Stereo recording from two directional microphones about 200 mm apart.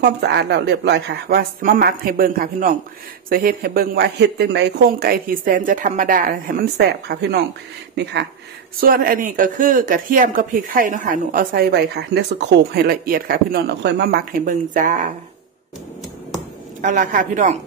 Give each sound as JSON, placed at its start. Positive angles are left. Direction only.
{"t": 0.0, "sound": "speech", "side_deg": -55}
{"t": 8.8, "sound": "speech", "side_deg": -45}
{"t": 16.8, "sound": "a man's voice", "side_deg": -40}